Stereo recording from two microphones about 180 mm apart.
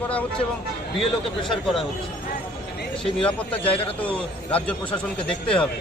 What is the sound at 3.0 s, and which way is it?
Speech, 5° left (ahead or behind).